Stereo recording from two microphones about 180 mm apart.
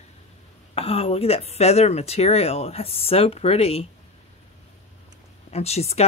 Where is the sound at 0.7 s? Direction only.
35° left (ahead or behind).